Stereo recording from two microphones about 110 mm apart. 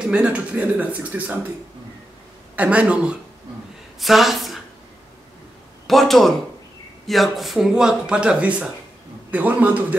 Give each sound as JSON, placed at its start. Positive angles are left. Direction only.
{"t": 0.0, "sound": "speech", "side_deg": -10}
{"t": 2.5, "sound": "speech", "side_deg": -10}
{"t": 5.9, "sound": "speech", "side_deg": 0}